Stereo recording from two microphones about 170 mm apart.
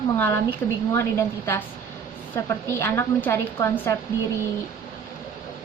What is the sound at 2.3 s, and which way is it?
Speech, 15° left (ahead or behind).